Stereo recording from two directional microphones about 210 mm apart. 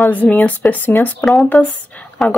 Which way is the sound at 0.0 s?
10° left (ahead or behind).